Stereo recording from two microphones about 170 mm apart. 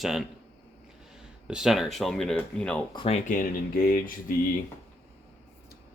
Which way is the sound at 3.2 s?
55° left (ahead or behind).